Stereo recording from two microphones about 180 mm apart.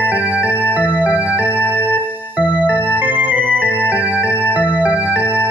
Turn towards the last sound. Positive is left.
turn(degrees=-10)  # may be behind; listen again after turning